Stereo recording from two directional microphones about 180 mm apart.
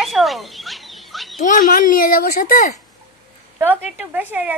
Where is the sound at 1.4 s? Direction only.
50° left (ahead or behind).